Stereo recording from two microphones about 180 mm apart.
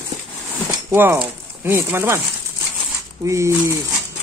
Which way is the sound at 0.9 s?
10° right (ahead or behind).